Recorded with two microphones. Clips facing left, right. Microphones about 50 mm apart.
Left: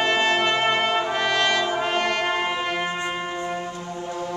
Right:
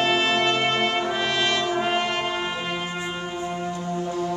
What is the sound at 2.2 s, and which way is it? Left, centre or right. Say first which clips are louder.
Brass instrument: left 3 dB; left.